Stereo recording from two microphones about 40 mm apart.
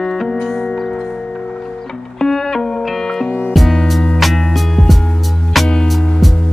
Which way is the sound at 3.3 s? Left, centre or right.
Left.